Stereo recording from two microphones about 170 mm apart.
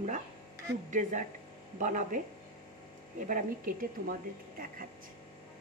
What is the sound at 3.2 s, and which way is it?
Speech, 50° right (ahead or behind).